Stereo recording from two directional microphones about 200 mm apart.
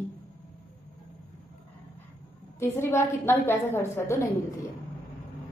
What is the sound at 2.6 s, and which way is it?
A woman's voice, 10° left (ahead or behind).